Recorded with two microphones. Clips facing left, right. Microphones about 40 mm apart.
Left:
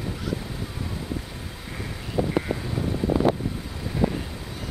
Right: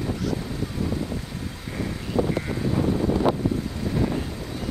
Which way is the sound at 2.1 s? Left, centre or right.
Centre.